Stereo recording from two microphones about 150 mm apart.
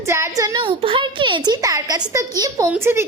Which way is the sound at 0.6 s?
35° right (ahead or behind).